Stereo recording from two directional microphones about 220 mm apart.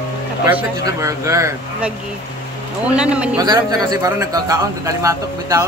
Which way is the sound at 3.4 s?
15° right (ahead or behind).